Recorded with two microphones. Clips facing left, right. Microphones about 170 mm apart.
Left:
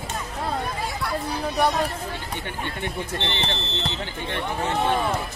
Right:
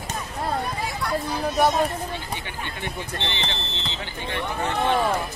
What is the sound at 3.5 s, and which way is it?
Speech, 60° left (ahead or behind).